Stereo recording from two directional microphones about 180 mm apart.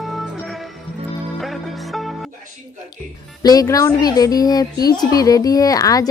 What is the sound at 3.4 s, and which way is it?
A woman's voice, 20° left (ahead or behind).